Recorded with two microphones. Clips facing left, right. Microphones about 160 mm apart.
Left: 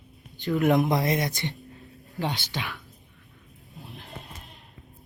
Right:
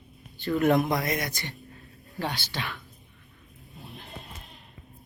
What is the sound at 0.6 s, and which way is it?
Speech, 20° left (ahead or behind).